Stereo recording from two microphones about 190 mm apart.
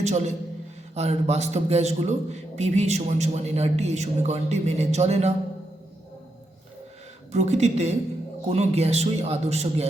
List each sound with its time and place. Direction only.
0.0 s a man's voice: 35° right (ahead or behind)
7.3 s a man's voice: 35° right (ahead or behind)